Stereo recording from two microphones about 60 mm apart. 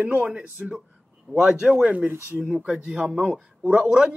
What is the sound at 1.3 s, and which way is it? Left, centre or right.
A man's voice, centre.